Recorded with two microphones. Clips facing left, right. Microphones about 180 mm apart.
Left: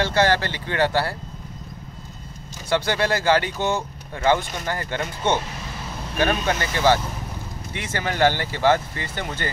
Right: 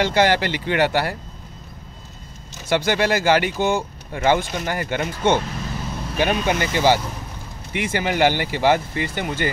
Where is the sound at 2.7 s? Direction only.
15° right (ahead or behind).